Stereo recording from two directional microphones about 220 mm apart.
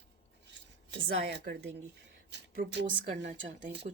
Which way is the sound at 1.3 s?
50° right (ahead or behind).